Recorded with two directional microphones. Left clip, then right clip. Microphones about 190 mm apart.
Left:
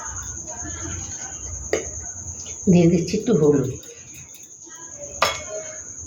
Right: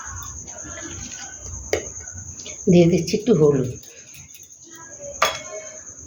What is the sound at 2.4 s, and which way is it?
Speech, 50° right (ahead or behind).